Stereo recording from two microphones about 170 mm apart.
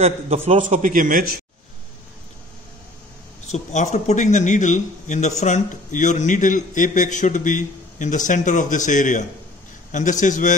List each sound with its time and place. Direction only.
0.0 s a man's voice: 35° right (ahead or behind)
0.6 s a man's voice: 50° right (ahead or behind)
3.4 s a man's voice: 40° left (ahead or behind)
10.2 s a man's voice: 45° left (ahead or behind)